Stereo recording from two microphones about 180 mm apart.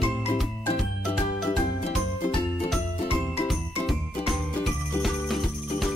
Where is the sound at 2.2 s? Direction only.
30° left (ahead or behind).